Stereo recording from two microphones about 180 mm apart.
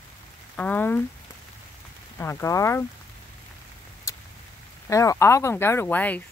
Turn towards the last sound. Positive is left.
turn(degrees=10)  # may be behind; listen again after turning